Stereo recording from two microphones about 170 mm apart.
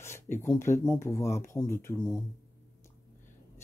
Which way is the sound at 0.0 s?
15° left (ahead or behind).